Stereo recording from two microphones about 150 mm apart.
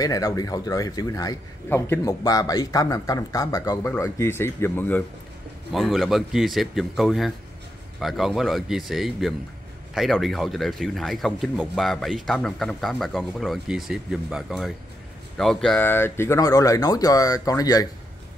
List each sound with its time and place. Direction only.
0.0 s a man's voice: 25° left (ahead or behind)
5.7 s a man's voice: centre (ahead or behind); by 17.8 s 25° left (ahead or behind)